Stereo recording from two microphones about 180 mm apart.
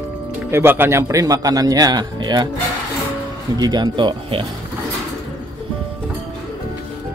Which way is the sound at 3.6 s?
25° right (ahead or behind).